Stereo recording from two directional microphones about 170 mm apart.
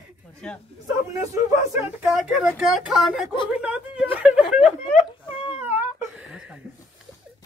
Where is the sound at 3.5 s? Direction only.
5° right (ahead or behind).